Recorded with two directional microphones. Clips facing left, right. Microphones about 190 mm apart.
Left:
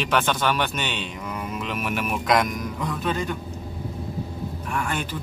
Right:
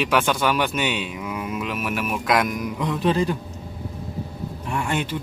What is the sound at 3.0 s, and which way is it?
Speech, 30° right (ahead or behind).